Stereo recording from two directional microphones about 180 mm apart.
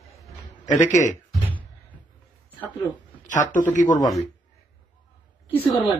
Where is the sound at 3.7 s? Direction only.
45° left (ahead or behind).